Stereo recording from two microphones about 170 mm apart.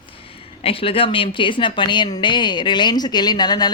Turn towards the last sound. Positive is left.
turn(degrees=25)  # may be behind; listen again after turning